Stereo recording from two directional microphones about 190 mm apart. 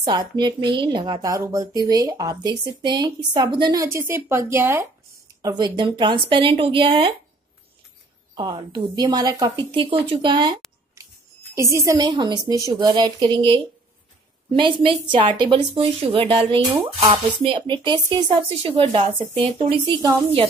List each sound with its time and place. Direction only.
0.0 s a woman's voice: 20° right (ahead or behind)
8.4 s a woman's voice: 20° right (ahead or behind)